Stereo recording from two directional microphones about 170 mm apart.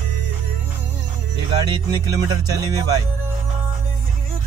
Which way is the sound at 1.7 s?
25° right (ahead or behind).